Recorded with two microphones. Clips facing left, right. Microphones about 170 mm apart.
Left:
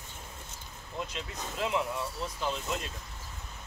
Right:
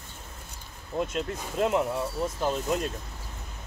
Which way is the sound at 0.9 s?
50° right (ahead or behind).